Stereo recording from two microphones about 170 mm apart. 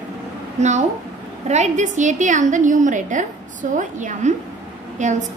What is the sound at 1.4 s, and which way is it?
A woman's voice, 45° right (ahead or behind).